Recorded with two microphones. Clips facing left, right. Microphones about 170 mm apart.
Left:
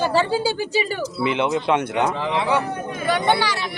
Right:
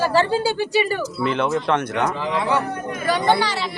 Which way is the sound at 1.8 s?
25° left (ahead or behind).